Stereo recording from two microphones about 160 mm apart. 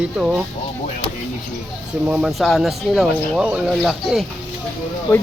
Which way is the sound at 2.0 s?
5° right (ahead or behind).